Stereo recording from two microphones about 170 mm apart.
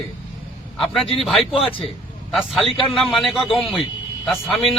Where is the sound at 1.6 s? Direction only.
35° left (ahead or behind).